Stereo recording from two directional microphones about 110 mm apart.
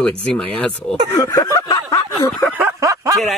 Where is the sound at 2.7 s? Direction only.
30° right (ahead or behind).